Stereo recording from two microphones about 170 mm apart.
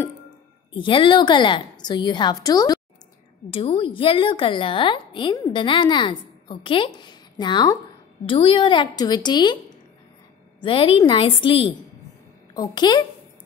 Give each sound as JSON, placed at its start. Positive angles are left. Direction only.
{"t": 0.7, "sound": "a woman's voice", "side_deg": 30}
{"t": 10.6, "sound": "a woman's voice", "side_deg": 30}